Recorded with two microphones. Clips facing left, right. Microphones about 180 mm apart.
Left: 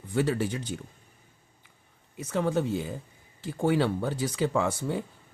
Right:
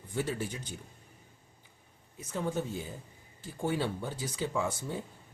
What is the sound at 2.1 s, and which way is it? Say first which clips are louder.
Speech: left 7 dB; 75° left (ahead or behind).